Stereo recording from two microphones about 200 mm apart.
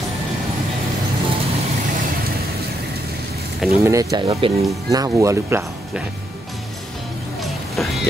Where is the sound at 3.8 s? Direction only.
15° right (ahead or behind).